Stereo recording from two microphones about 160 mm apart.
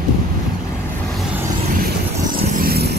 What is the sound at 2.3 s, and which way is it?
Vehicle, 70° right (ahead or behind).